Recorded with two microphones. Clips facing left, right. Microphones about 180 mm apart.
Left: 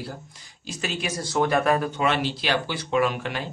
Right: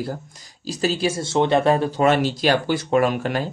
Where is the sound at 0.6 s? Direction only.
35° right (ahead or behind).